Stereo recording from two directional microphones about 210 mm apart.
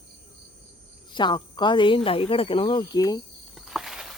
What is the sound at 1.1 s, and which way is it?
Speech, 20° left (ahead or behind).